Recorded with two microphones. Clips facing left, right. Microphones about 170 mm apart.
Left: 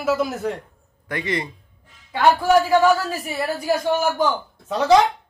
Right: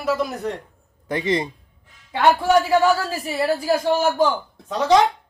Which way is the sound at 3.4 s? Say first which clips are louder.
Right 2 dB; 25° right (ahead or behind).